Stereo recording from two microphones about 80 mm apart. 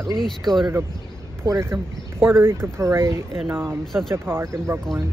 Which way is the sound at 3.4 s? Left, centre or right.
Right.